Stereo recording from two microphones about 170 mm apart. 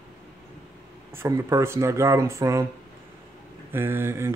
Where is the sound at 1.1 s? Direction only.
15° right (ahead or behind).